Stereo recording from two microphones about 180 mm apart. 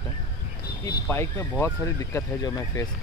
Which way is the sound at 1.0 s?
15° left (ahead or behind).